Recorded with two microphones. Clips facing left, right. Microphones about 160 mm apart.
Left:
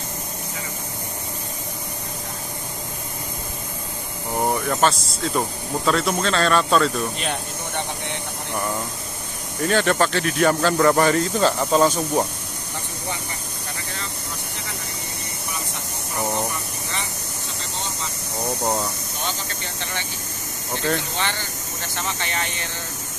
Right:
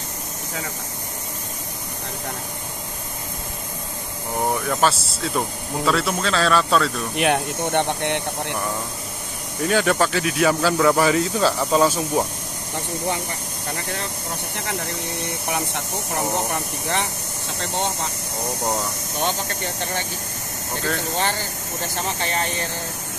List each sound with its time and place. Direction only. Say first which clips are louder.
4.5 s speech: even; centre (ahead or behind)
7.2 s speech: right 8 dB; 60° right (ahead or behind)
9.6 s speech: even; 5° right (ahead or behind)
17.6 s speech: right 8 dB; 60° right (ahead or behind)
19.1 s speech: right 5 dB; 50° right (ahead or behind)
21.2 s speech: right 3 dB; 40° right (ahead or behind)